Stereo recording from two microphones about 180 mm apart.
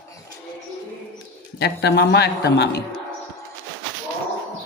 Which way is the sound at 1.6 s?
65° left (ahead or behind).